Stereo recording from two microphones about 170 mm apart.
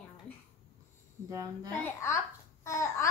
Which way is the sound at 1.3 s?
20° right (ahead or behind).